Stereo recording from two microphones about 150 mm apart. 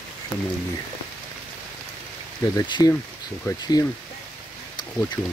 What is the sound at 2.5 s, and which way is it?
Speech, 25° left (ahead or behind).